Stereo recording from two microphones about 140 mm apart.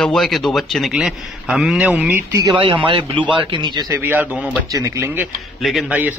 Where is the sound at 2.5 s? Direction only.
40° right (ahead or behind).